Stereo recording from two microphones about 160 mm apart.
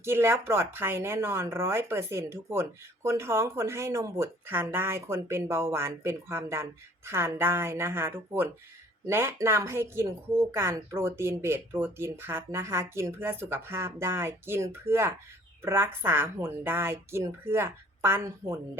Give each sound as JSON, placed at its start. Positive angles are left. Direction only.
{"t": 0.0, "sound": "speech", "side_deg": -15}